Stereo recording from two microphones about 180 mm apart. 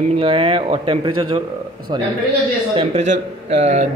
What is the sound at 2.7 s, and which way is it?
Speech, 40° right (ahead or behind).